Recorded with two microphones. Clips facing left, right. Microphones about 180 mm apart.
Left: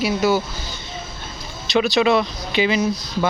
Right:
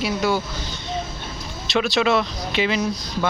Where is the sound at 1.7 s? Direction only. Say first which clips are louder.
Left 3 dB; centre (ahead or behind).